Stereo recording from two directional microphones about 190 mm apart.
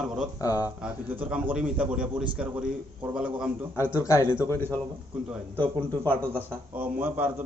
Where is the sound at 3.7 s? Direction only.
15° left (ahead or behind).